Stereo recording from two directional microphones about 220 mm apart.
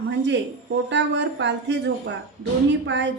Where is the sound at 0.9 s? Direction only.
55° right (ahead or behind).